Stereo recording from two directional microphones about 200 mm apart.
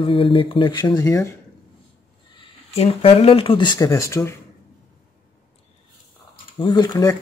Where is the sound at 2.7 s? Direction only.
30° left (ahead or behind); by 4.3 s 15° left (ahead or behind).